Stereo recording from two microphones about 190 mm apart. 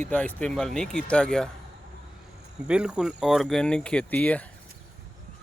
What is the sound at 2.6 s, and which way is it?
Speech, 5° right (ahead or behind).